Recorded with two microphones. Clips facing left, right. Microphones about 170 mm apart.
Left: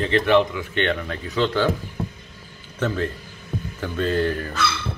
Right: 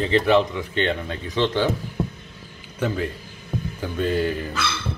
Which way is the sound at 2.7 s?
10° right (ahead or behind).